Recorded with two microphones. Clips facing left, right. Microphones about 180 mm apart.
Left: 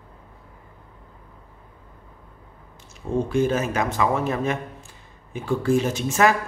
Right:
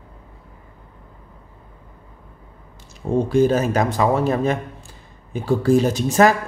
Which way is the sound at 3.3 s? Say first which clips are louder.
Right 6 dB; 35° right (ahead or behind).